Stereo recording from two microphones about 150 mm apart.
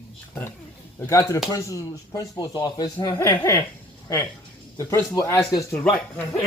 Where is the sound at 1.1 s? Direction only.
20° left (ahead or behind).